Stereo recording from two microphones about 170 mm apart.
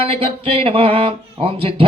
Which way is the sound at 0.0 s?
35° right (ahead or behind).